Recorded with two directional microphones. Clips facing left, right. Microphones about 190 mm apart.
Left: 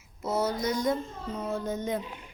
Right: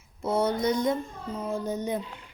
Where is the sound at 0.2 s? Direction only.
30° right (ahead or behind).